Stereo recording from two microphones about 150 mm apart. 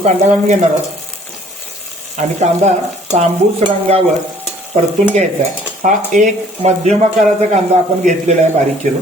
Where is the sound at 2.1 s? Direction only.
50° right (ahead or behind).